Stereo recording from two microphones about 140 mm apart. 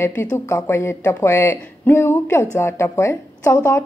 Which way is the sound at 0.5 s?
20° left (ahead or behind).